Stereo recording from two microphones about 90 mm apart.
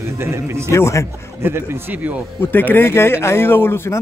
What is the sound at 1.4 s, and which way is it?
Speech, 25° right (ahead or behind).